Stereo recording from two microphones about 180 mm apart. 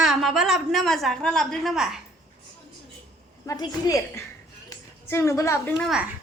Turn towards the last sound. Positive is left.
turn(degrees=-5)  # may be behind; listen again after turning